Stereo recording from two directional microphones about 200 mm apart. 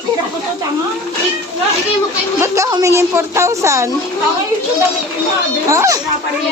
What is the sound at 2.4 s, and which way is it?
A woman's voice, 15° right (ahead or behind).